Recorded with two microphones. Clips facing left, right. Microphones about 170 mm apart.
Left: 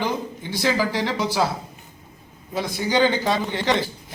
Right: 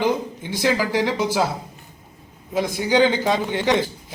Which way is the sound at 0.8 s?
15° right (ahead or behind).